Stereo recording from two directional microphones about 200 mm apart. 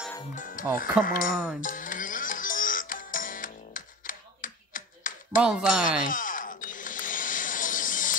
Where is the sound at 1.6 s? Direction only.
40° left (ahead or behind).